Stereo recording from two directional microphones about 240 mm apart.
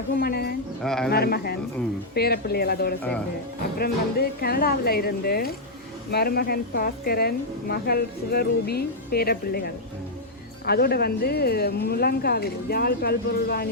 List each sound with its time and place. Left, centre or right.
0.2 s a woman's voice: left
0.8 s speech: centre
1.1 s a woman's voice: left